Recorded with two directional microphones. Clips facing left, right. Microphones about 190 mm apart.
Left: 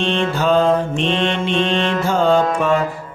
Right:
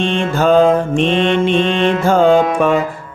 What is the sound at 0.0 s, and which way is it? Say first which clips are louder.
Mantra: right 3 dB; 50° right (ahead or behind).